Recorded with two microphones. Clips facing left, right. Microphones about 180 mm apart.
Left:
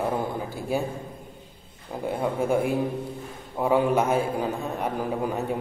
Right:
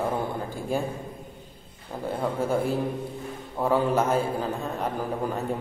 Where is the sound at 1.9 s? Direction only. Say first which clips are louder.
Left 1 dB; 10° left (ahead or behind).